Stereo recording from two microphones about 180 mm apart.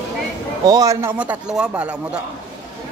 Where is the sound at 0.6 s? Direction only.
20° right (ahead or behind).